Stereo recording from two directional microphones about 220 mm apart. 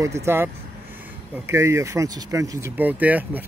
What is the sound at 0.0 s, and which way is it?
Speech, 10° right (ahead or behind).